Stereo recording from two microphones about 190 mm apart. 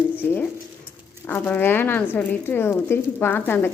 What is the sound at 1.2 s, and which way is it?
A woman's voice, 10° left (ahead or behind).